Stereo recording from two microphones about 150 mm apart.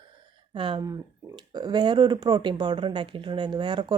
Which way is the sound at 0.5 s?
35° right (ahead or behind).